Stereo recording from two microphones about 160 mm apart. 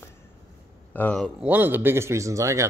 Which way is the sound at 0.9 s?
5° left (ahead or behind).